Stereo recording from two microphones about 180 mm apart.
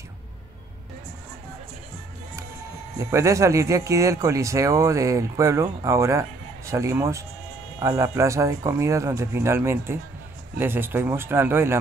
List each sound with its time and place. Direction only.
3.0 s speech: 15° right (ahead or behind)